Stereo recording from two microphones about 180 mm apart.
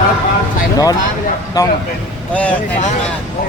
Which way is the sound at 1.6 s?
20° left (ahead or behind).